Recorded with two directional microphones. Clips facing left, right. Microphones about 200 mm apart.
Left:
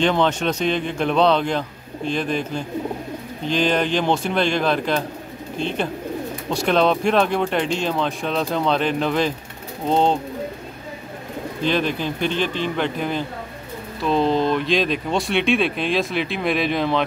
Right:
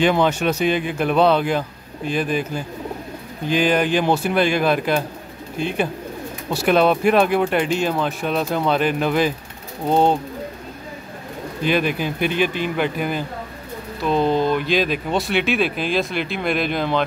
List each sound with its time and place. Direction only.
0.0 s speech: 10° right (ahead or behind)
11.6 s speech: 10° right (ahead or behind)